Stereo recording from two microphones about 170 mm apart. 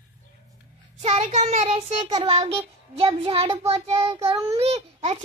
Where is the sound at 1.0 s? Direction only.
40° right (ahead or behind).